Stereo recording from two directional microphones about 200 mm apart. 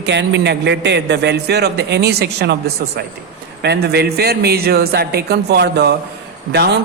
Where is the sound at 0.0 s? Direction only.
60° right (ahead or behind).